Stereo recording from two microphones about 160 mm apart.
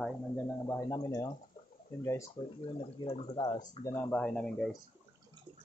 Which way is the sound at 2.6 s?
35° left (ahead or behind).